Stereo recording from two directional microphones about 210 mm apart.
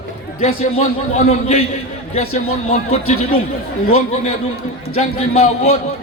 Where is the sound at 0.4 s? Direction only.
30° left (ahead or behind).